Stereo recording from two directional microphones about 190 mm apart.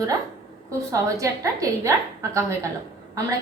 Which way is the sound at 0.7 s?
15° right (ahead or behind).